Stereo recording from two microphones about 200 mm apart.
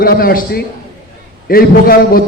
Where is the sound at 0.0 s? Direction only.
45° left (ahead or behind).